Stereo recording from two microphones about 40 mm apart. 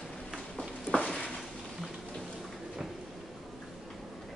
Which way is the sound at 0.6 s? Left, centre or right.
Centre.